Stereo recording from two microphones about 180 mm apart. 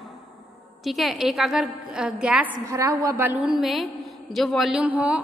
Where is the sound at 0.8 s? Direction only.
Centre (ahead or behind).